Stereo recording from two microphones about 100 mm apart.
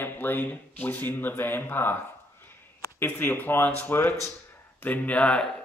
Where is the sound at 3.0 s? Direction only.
20° left (ahead or behind).